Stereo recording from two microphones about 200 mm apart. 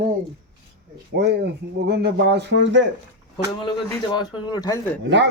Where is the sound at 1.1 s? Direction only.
55° right (ahead or behind).